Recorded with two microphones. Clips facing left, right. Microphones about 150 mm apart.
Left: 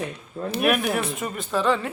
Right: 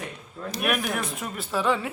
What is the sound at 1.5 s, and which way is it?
Speech, 10° right (ahead or behind).